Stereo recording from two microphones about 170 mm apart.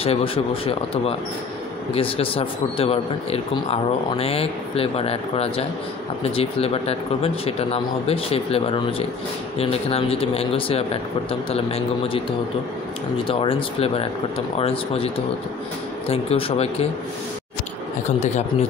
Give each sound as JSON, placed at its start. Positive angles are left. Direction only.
{"t": 0.0, "sound": "speech", "side_deg": 35}
{"t": 13.3, "sound": "speech", "side_deg": 30}
{"t": 16.1, "sound": "speech", "side_deg": 35}
{"t": 18.2, "sound": "speech", "side_deg": 40}